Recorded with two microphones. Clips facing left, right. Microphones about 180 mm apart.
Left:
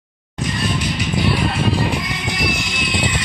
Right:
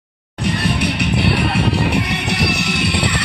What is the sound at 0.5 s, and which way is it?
Music, 65° right (ahead or behind).